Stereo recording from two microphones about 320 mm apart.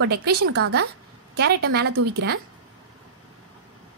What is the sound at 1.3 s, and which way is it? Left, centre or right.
Speech, right.